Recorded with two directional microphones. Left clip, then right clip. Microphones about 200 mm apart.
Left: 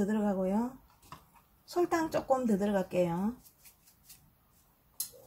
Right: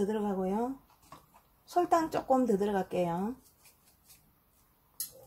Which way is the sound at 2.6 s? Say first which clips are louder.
Left 1 dB; 25° right (ahead or behind).